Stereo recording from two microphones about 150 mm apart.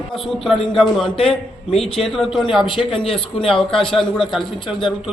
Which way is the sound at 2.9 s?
40° left (ahead or behind).